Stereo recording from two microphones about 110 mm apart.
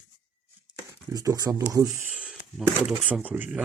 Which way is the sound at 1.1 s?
30° right (ahead or behind).